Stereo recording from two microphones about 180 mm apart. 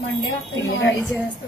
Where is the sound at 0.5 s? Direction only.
90° left.